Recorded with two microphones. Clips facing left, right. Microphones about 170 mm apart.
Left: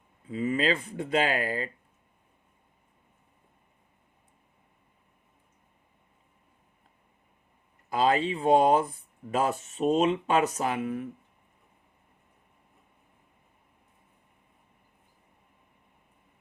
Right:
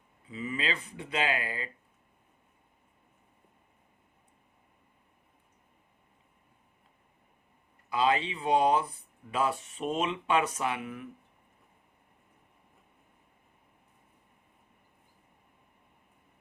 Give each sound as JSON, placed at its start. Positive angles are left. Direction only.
{"t": 0.3, "sound": "speech", "side_deg": 45}
{"t": 7.9, "sound": "speech", "side_deg": 45}